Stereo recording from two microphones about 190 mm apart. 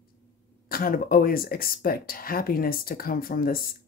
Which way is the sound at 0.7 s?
50° left (ahead or behind).